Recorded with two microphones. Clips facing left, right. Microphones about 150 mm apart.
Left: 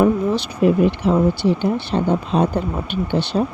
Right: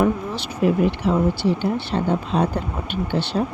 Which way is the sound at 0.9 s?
20° left (ahead or behind).